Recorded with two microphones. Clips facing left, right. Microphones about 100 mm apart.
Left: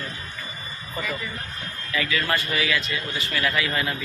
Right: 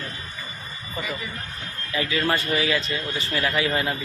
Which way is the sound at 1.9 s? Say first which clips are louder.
Right 1 dB; 30° right (ahead or behind).